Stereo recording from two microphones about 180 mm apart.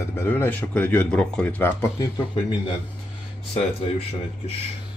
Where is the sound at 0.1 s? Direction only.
10° left (ahead or behind).